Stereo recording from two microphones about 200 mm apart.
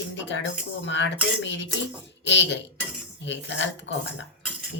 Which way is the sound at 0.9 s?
65° left (ahead or behind).